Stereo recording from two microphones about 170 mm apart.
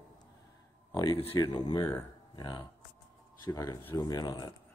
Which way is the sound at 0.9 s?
30° left (ahead or behind).